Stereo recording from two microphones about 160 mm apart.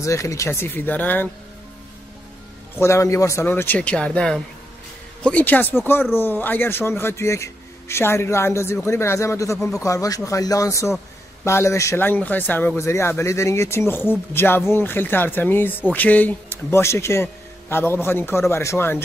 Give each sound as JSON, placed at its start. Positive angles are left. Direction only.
{"t": 0.0, "sound": "a man's voice", "side_deg": 20}
{"t": 2.8, "sound": "a man's voice", "side_deg": 20}